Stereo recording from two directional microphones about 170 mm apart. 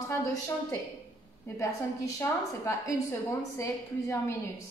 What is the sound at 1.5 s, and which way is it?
A woman's voice, 15° left (ahead or behind).